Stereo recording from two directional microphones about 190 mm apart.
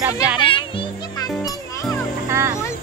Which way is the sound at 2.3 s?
15° right (ahead or behind).